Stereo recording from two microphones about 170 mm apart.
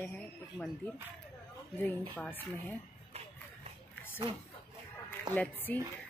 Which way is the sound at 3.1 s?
40° right (ahead or behind).